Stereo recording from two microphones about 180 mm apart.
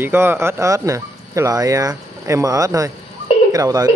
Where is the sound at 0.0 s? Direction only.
10° right (ahead or behind).